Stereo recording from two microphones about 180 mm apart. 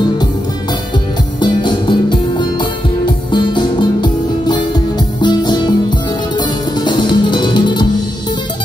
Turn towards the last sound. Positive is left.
turn(degrees=25)  # may be behind; listen again after turning